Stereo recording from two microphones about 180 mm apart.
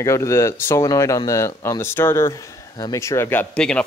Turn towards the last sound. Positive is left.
turn(degrees=5)  # may be behind; listen again after turning